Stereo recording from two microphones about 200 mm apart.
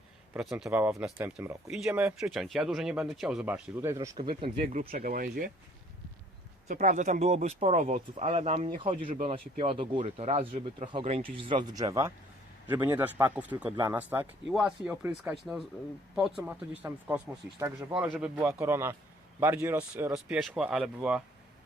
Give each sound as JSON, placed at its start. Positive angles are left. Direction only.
{"t": 0.3, "sound": "speech", "side_deg": -5}
{"t": 4.8, "sound": "speech", "side_deg": -45}
{"t": 6.7, "sound": "speech", "side_deg": -40}